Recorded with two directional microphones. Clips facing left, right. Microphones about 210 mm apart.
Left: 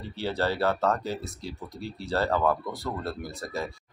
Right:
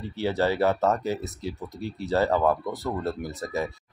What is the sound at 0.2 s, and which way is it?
Speech, 15° right (ahead or behind).